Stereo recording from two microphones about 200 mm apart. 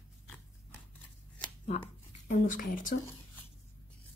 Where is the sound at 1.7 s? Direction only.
40° left (ahead or behind).